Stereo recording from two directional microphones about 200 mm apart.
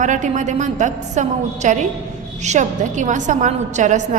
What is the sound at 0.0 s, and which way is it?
A woman's voice, 40° right (ahead or behind).